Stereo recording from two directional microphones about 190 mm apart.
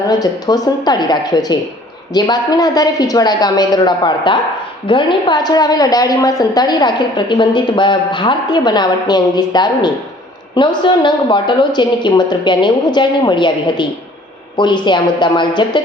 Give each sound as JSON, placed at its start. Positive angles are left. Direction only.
{"t": 0.2, "sound": "a woman's voice", "side_deg": 20}